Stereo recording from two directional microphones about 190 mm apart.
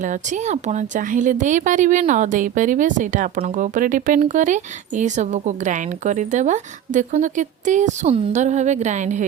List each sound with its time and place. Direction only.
0.0 s speech: 40° right (ahead or behind)